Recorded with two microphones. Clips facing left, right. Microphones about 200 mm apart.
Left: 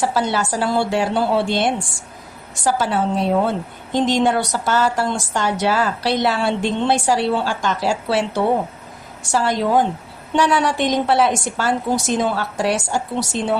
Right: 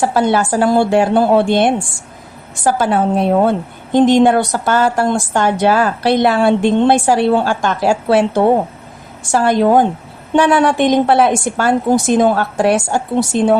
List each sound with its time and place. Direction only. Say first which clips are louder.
0.0 s a woman's voice: right 6 dB; 55° right (ahead or behind)